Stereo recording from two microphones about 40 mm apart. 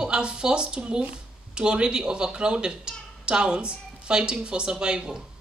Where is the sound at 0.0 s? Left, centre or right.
Right.